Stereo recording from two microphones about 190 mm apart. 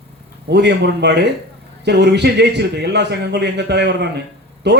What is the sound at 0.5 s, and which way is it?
A man's voice, 65° right (ahead or behind).